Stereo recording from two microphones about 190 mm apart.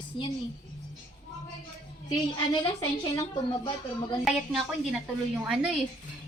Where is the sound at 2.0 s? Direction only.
25° left (ahead or behind).